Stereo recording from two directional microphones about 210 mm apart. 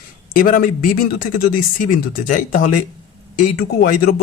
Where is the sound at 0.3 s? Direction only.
40° left (ahead or behind).